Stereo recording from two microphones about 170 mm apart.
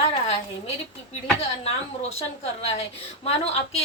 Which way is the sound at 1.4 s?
35° left (ahead or behind).